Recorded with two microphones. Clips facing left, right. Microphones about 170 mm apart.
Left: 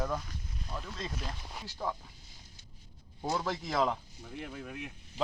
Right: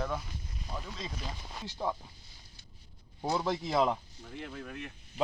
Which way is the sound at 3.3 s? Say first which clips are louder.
Right 3 dB; 15° right (ahead or behind).